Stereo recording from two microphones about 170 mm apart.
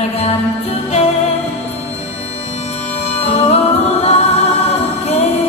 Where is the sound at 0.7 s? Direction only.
35° left (ahead or behind).